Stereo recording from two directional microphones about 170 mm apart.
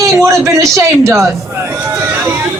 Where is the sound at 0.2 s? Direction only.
20° right (ahead or behind).